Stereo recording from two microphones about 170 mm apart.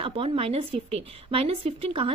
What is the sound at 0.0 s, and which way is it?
A woman's voice, 35° right (ahead or behind).